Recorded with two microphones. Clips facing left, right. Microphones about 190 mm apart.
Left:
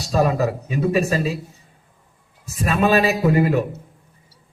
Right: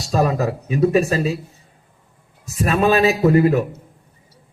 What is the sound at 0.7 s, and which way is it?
Speech, 45° right (ahead or behind).